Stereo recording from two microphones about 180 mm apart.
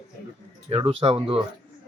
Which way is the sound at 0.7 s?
35° right (ahead or behind).